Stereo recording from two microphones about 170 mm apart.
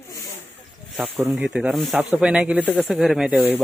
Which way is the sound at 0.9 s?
5° right (ahead or behind).